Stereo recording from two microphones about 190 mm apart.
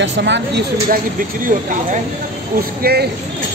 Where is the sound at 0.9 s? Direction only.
45° right (ahead or behind).